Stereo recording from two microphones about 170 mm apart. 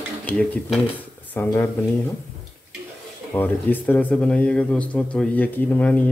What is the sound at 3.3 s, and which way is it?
Speech, 10° left (ahead or behind).